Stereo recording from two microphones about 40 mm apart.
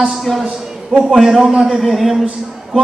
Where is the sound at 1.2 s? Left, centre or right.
Centre.